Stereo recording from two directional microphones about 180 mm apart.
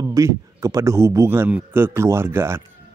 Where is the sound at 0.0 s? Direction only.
15° right (ahead or behind).